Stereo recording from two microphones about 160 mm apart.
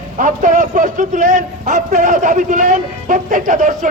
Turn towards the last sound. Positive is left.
turn(degrees=-55)  # may be behind; listen again after turning